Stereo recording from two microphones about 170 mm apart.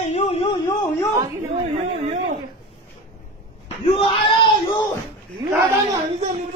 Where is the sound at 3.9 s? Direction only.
30° left (ahead or behind).